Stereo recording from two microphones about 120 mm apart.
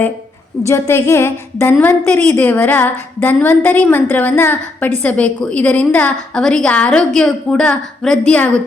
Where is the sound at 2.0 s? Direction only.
15° left (ahead or behind).